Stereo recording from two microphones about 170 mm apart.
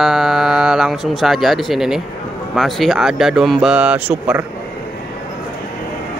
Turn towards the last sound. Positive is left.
turn(degrees=-10)  # may be behind; listen again after turning